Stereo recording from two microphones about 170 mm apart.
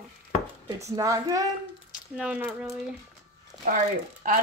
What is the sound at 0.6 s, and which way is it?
Speech, 20° right (ahead or behind).